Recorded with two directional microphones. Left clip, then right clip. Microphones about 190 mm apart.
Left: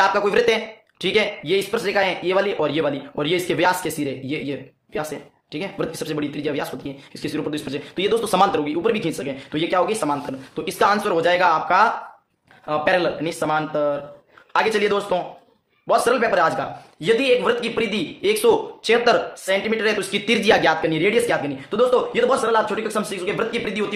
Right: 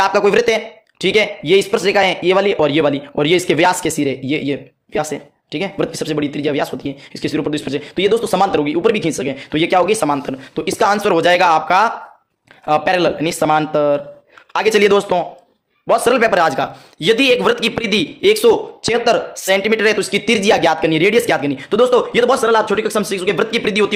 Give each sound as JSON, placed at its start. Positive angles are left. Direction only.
{"t": 0.0, "sound": "speech", "side_deg": -35}
{"t": 8.6, "sound": "speech", "side_deg": -35}
{"t": 18.5, "sound": "speech", "side_deg": -25}
{"t": 19.5, "sound": "speech", "side_deg": -45}
{"t": 20.9, "sound": "speech", "side_deg": -45}